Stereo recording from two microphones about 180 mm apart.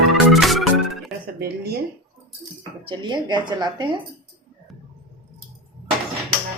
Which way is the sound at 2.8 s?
25° right (ahead or behind).